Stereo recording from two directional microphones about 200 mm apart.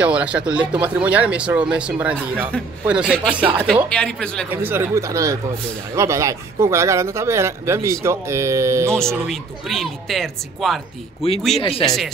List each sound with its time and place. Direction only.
0.0 s speech: 5° right (ahead or behind)
3.9 s speech: 5° left (ahead or behind)
4.5 s speech: 10° right (ahead or behind)
9.0 s speech: centre (ahead or behind)
11.2 s speech: 30° left (ahead or behind)
11.8 s speech: centre (ahead or behind)